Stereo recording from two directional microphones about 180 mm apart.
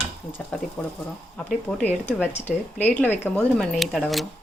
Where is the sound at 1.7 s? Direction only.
10° left (ahead or behind).